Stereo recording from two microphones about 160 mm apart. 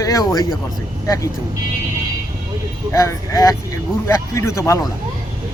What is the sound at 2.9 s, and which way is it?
Speech, 20° left (ahead or behind).